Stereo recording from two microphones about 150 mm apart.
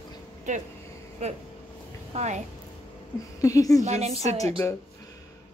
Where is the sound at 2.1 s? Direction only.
45° right (ahead or behind).